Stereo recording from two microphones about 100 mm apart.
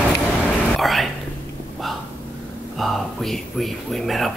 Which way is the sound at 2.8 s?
Centre (ahead or behind).